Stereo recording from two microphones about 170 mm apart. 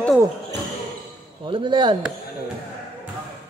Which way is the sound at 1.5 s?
30° right (ahead or behind).